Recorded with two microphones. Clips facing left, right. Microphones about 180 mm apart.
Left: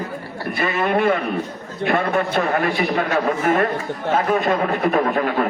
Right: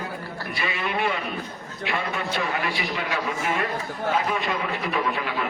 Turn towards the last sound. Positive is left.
turn(degrees=50)  # may be behind; listen again after turning